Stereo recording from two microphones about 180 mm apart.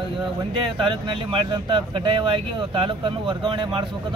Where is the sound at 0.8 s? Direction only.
25° right (ahead or behind).